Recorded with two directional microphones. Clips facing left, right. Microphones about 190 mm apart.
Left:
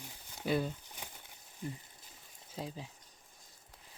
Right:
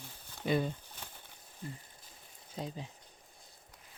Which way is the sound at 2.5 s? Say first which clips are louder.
Right 1 dB; 5° left (ahead or behind).